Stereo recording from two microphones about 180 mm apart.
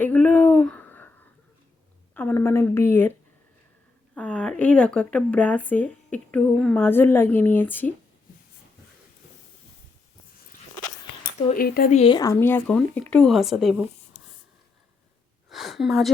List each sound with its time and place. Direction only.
0.0 s a sound: 10° left (ahead or behind)
2.1 s speech: 10° left (ahead or behind)
4.1 s speech: 5° left (ahead or behind)
11.5 s speech: 55° left (ahead or behind)
11.9 s speech: 30° left (ahead or behind)
12.2 s speech: 15° left (ahead or behind); by 13.8 s centre (ahead or behind)
15.4 s a sound: centre (ahead or behind)